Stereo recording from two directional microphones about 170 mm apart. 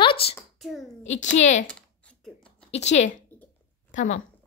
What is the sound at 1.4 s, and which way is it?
Speech, 45° left (ahead or behind).